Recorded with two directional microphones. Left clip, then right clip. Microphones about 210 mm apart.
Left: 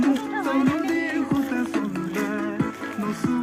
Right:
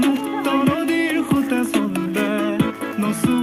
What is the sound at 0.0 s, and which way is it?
Music, 60° right (ahead or behind).